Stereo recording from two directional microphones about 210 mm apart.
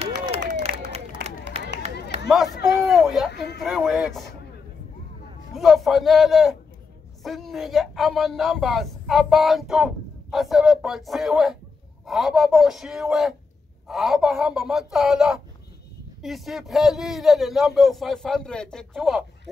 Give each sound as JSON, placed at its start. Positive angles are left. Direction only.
{"t": 1.5, "sound": "a sound", "side_deg": -30}
{"t": 2.2, "sound": "speech", "side_deg": 0}
{"t": 3.3, "sound": "speech", "side_deg": 50}
{"t": 3.6, "sound": "speech", "side_deg": 0}
{"t": 5.5, "sound": "speech", "side_deg": 0}